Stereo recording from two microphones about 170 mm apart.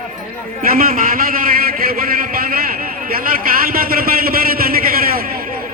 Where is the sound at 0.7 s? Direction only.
55° right (ahead or behind).